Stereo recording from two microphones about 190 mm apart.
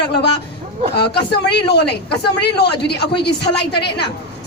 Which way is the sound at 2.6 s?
60° left (ahead or behind).